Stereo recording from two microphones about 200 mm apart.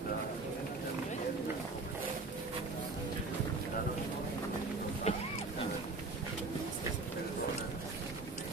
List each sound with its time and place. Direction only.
5.1 s vehicle: 30° left (ahead or behind)